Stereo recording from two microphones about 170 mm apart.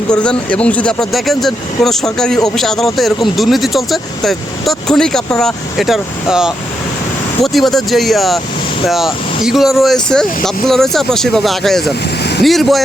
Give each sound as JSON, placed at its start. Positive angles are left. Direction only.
{"t": 0.1, "sound": "speech", "side_deg": 5}